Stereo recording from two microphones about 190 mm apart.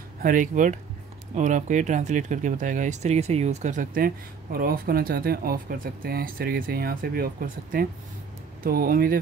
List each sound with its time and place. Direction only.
0.2 s speech: 45° right (ahead or behind)